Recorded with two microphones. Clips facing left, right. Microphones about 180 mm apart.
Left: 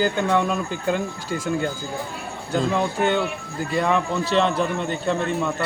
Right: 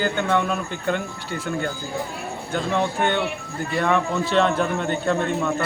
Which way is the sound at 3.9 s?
Centre (ahead or behind).